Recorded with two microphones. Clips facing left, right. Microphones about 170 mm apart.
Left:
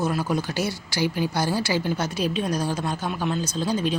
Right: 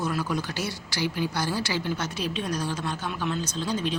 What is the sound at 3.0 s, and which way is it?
Speech, 40° left (ahead or behind).